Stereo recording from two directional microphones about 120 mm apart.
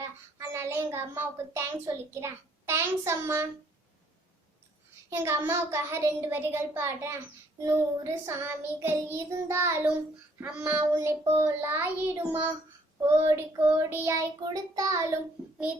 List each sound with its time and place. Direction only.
0.3 s a child's voice: 20° right (ahead or behind)
5.0 s a child's voice: 25° right (ahead or behind)
5.5 s child singing: 20° right (ahead or behind)
10.4 s child singing: 10° right (ahead or behind); by 14.9 s 30° right (ahead or behind)